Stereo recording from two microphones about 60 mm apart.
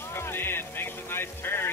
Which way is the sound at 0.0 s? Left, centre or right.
Left.